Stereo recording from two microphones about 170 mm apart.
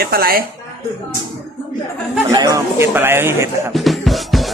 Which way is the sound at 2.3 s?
20° right (ahead or behind).